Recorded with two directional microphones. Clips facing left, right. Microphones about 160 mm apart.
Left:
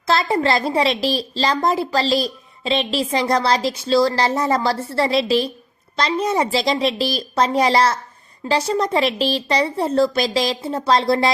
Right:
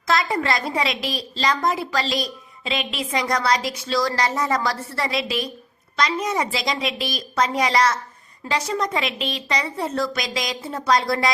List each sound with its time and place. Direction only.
0.1 s a woman's voice: 30° left (ahead or behind)